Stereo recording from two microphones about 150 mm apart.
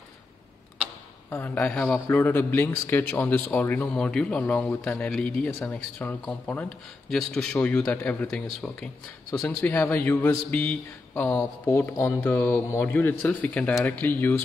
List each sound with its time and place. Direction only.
1.3 s a man's voice: 15° left (ahead or behind)